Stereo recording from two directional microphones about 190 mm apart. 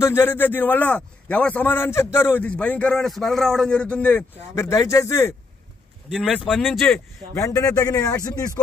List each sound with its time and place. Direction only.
0.0 s a man's voice: 10° left (ahead or behind)
6.0 s speech: centre (ahead or behind)
7.3 s a man's voice: 15° left (ahead or behind)